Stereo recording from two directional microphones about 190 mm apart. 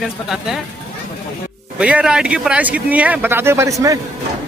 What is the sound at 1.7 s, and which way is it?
Speech, 5° right (ahead or behind).